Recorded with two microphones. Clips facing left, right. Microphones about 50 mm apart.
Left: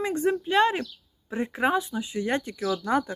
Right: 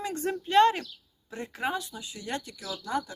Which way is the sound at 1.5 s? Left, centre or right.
Left.